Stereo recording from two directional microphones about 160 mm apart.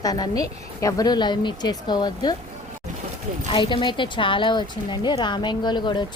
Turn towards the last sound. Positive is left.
turn(degrees=30)  # may be behind; listen again after turning